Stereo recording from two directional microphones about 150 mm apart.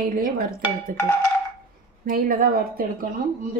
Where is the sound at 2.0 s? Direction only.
70° right (ahead or behind).